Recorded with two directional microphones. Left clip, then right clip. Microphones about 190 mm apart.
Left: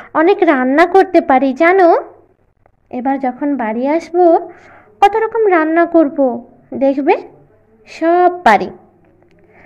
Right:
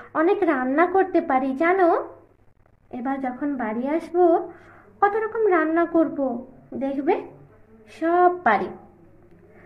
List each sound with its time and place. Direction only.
0.0 s a woman's voice: 35° left (ahead or behind)